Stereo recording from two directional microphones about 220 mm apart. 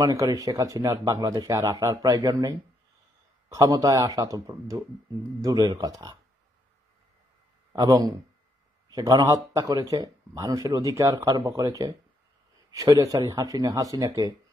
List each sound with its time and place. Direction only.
0.0 s speech: 15° right (ahead or behind)
7.7 s speech: 15° right (ahead or behind)